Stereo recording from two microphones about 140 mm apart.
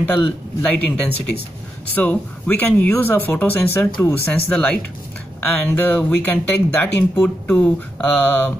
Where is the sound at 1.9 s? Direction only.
10° left (ahead or behind).